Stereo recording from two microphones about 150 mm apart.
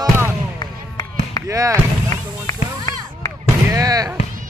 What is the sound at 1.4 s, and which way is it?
Speech, 20° right (ahead or behind).